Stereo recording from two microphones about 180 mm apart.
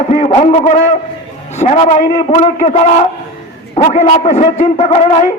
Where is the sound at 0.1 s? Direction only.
35° left (ahead or behind).